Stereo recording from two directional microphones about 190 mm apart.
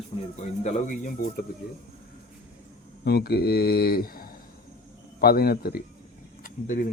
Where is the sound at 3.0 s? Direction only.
60° left (ahead or behind).